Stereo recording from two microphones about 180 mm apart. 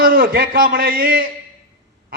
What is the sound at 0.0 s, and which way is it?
A man's voice, 50° right (ahead or behind).